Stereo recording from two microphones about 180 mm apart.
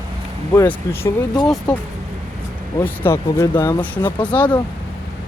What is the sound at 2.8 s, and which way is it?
Speech, 10° left (ahead or behind).